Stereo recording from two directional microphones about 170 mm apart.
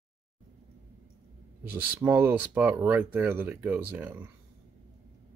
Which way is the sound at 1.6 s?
10° right (ahead or behind).